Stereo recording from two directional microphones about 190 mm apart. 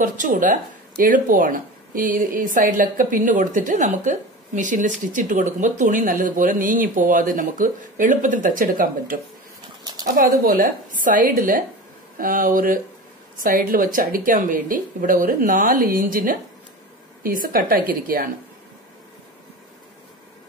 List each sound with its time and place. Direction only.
0.0 s speech: 45° right (ahead or behind)